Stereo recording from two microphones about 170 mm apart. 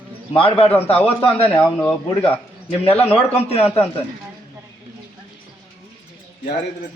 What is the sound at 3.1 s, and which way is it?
Speech, 35° left (ahead or behind).